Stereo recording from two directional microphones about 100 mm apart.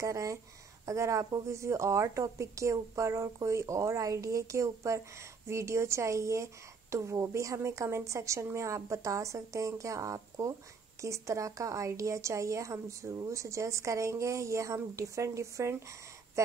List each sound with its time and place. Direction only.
0.0 s a woman's voice: 30° right (ahead or behind)